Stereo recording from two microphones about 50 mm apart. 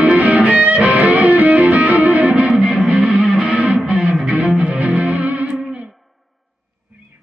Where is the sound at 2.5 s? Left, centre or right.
Centre.